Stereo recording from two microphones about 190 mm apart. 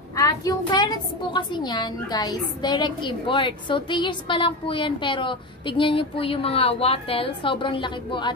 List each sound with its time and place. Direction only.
0.1 s a woman's voice: 15° left (ahead or behind)